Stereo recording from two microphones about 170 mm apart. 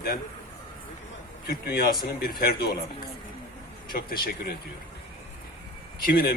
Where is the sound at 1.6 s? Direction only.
65° left (ahead or behind).